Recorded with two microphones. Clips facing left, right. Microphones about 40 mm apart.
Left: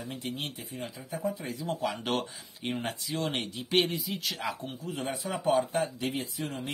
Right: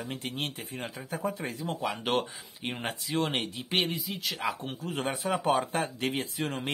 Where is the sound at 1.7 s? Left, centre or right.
Centre.